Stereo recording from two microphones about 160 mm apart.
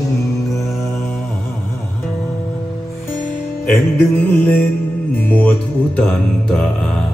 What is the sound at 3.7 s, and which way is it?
Music, 10° left (ahead or behind).